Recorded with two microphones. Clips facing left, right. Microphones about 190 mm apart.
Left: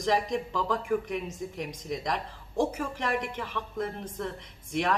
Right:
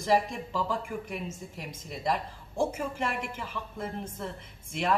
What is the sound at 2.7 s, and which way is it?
A woman's voice, 5° right (ahead or behind).